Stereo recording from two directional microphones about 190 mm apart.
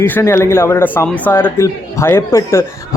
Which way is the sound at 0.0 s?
10° left (ahead or behind).